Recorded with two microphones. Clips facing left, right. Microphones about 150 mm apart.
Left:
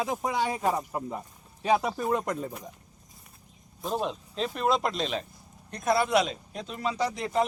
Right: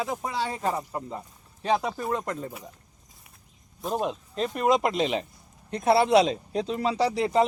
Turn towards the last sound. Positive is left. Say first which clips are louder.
# right 5 dB
turn(degrees=-35)  # may be behind; listen again after turning